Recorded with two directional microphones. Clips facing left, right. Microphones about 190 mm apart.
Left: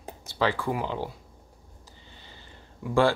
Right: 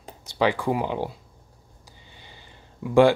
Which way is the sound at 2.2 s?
15° right (ahead or behind).